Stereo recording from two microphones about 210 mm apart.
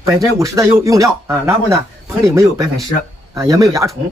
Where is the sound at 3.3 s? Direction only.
15° right (ahead or behind).